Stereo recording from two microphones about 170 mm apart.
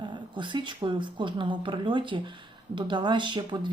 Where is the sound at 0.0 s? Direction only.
25° right (ahead or behind).